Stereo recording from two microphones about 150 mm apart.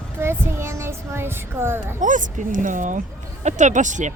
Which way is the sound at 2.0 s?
60° right (ahead or behind).